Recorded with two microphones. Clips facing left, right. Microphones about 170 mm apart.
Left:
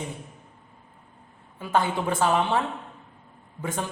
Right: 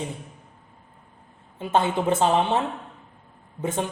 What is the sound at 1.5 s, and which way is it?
A woman's voice, 25° right (ahead or behind).